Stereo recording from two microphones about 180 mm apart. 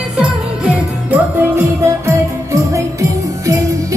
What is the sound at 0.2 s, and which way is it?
Music, 10° right (ahead or behind).